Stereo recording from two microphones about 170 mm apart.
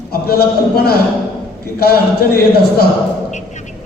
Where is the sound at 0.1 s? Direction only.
65° left (ahead or behind).